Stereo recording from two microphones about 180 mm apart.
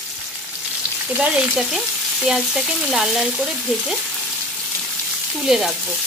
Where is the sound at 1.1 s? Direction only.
5° right (ahead or behind).